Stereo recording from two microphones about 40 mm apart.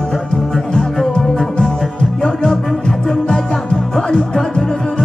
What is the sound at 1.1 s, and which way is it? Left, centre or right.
Music, left.